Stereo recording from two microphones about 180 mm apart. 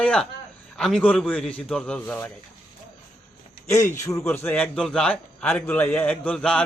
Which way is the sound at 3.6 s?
15° left (ahead or behind).